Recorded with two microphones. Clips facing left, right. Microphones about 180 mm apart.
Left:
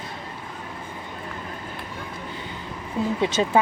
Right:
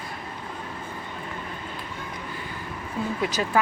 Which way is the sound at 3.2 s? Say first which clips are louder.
Left 4 dB; 25° left (ahead or behind).